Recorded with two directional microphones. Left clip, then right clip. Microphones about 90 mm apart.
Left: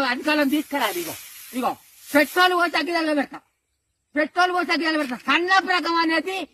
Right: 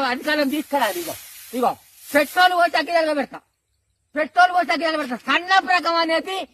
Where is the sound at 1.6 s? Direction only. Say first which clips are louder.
Right 4 dB; 40° right (ahead or behind).